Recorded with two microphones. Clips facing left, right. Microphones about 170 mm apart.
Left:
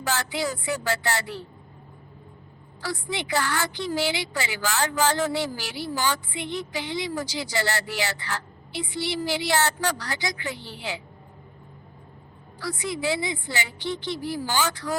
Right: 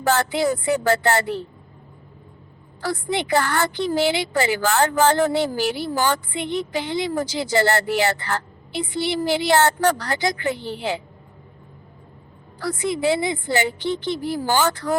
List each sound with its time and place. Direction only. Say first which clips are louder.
0.1 s a woman's voice: right 8 dB; 55° right (ahead or behind)
2.8 s a woman's voice: right 6 dB; 55° right (ahead or behind)
12.5 s a woman's voice: right 6 dB; 55° right (ahead or behind)